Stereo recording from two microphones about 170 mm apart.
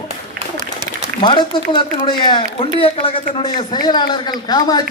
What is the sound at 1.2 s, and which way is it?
Speech, 30° left (ahead or behind).